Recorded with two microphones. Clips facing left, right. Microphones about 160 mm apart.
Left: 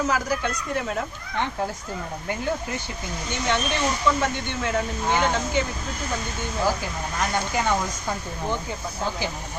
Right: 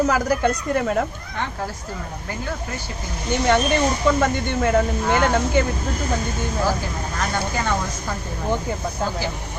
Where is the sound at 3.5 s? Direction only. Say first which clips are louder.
Right 5 dB; 45° right (ahead or behind).